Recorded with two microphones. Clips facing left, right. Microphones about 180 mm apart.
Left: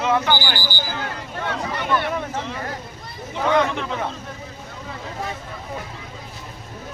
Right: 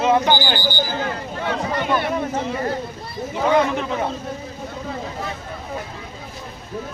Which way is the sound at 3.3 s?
5° right (ahead or behind).